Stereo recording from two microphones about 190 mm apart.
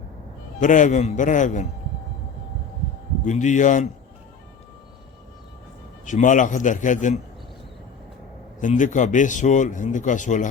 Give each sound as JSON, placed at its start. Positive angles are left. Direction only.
{"t": 0.6, "sound": "speech", "side_deg": 40}
{"t": 3.2, "sound": "speech", "side_deg": 40}
{"t": 6.1, "sound": "speech", "side_deg": 40}
{"t": 8.6, "sound": "speech", "side_deg": 40}